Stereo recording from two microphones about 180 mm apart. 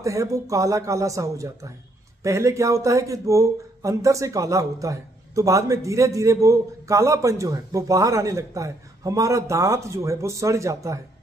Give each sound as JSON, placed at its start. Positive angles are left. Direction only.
{"t": 0.0, "sound": "speech", "side_deg": -20}